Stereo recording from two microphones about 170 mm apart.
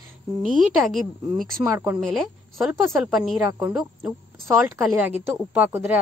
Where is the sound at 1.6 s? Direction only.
10° right (ahead or behind).